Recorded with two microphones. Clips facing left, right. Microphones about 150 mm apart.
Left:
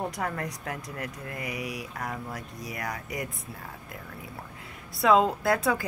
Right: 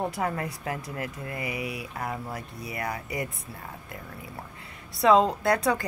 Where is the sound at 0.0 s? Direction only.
5° right (ahead or behind).